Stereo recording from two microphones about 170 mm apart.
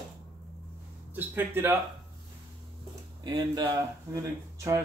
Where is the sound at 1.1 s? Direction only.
10° right (ahead or behind).